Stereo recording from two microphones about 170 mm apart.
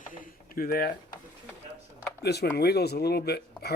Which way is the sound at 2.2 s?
70° left (ahead or behind).